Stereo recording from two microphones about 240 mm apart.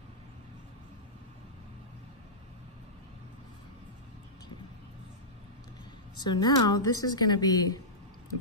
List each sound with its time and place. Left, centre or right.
6.1 s a woman's voice: centre